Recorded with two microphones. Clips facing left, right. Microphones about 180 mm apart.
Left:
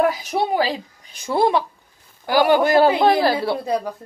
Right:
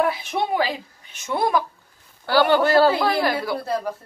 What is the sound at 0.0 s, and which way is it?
Speech, 40° left (ahead or behind).